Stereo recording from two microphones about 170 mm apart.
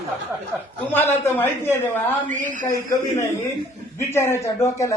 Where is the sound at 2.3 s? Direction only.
50° right (ahead or behind).